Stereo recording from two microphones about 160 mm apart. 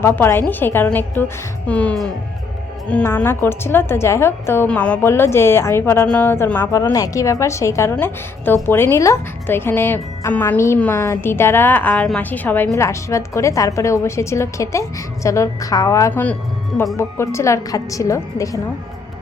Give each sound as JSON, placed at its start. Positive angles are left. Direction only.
{"t": 0.0, "sound": "a woman's voice", "side_deg": 15}